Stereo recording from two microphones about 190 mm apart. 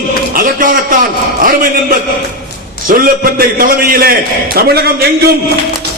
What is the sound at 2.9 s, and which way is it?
A man's voice, 50° right (ahead or behind).